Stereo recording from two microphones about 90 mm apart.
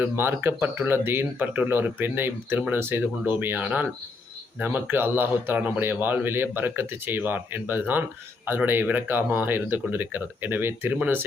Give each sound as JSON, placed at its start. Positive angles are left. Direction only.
{"t": 0.0, "sound": "a man's voice", "side_deg": -25}